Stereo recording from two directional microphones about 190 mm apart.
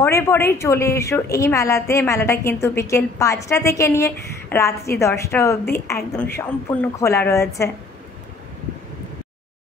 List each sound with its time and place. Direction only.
0.0 s a woman's voice: 15° left (ahead or behind)